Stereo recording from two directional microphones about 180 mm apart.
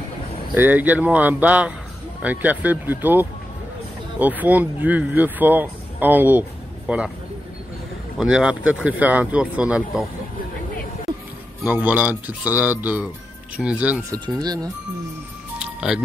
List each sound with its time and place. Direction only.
0.6 s speech: 10° right (ahead or behind)
8.2 s speech: 5° right (ahead or behind)
11.6 s speech: 10° right (ahead or behind)
14.1 s speech: 20° right (ahead or behind)
15.6 s music: 5° right (ahead or behind)